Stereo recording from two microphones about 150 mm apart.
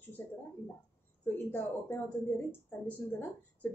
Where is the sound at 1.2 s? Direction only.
15° left (ahead or behind).